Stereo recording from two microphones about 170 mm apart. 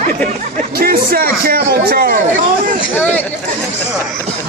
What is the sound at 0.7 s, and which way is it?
A man's voice, 60° right (ahead or behind).